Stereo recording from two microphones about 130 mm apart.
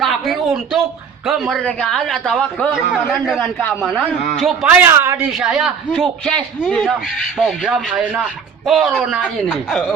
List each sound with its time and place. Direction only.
0.0 s a sound: centre (ahead or behind)
1.2 s speech: centre (ahead or behind)
4.6 s a woman's voice: 15° right (ahead or behind)
5.4 s speech: 5° right (ahead or behind)